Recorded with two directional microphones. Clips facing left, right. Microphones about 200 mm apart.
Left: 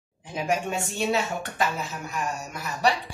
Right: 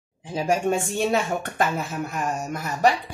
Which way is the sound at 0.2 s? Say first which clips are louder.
Right 3 dB; 30° right (ahead or behind).